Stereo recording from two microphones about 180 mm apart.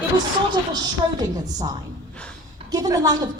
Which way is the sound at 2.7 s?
20° right (ahead or behind).